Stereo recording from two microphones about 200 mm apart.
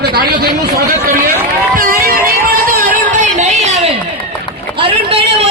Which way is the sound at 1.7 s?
45° right (ahead or behind).